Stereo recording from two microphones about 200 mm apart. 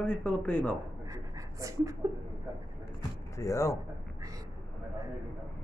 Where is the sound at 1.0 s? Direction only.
15° right (ahead or behind).